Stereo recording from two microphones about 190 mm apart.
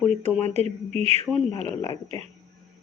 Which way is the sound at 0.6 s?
35° right (ahead or behind).